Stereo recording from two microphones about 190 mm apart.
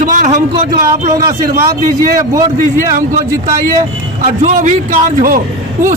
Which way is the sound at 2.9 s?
45° right (ahead or behind).